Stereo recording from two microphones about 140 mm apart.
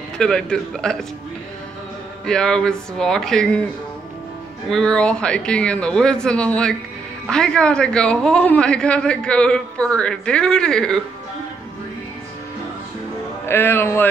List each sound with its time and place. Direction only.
0.2 s speech: 5° left (ahead or behind)
2.2 s speech: 5° left (ahead or behind)
4.6 s a woman's voice: 5° left (ahead or behind)
13.5 s a woman's voice: 15° left (ahead or behind)